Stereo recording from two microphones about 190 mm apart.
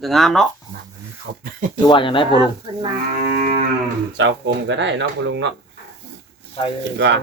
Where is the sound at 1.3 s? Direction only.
60° right (ahead or behind).